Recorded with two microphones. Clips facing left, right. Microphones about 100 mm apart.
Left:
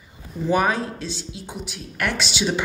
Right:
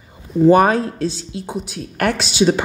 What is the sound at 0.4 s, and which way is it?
Speech, 50° right (ahead or behind).